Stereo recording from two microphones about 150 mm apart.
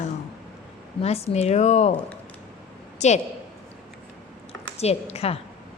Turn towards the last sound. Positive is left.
turn(degrees=40)  # may be behind; listen again after turning